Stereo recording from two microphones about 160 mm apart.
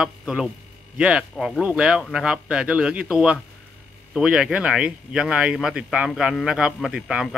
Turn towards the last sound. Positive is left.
turn(degrees=-5)  # may be behind; listen again after turning